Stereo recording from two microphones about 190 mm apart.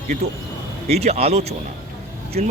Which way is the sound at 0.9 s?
35° right (ahead or behind).